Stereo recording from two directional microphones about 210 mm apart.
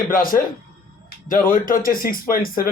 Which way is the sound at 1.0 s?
40° left (ahead or behind).